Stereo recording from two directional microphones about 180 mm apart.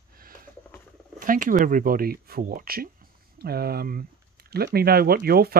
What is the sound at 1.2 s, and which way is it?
Speech, 50° right (ahead or behind).